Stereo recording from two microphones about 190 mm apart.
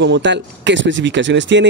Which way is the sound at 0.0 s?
70° right (ahead or behind).